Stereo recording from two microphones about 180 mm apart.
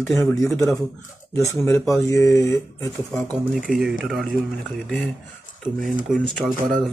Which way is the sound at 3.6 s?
5° right (ahead or behind).